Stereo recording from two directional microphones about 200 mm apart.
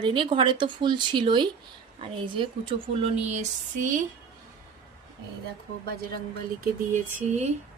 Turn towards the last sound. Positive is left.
turn(degrees=-35)  # may be behind; listen again after turning